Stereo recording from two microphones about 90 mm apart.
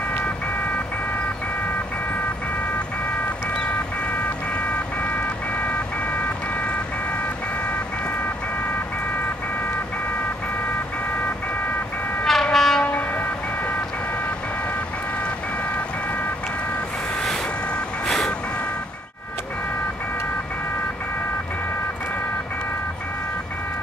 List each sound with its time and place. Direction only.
12.3 s train: 5° left (ahead or behind)
18.0 s vehicle: 5° left (ahead or behind)